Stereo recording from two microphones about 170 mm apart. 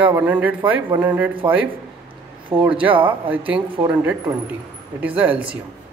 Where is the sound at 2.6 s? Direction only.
10° right (ahead or behind).